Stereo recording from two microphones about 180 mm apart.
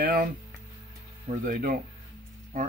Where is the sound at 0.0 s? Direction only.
55° right (ahead or behind).